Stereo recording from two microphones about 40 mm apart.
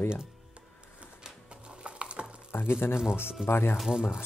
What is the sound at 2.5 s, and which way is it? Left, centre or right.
Speech, left.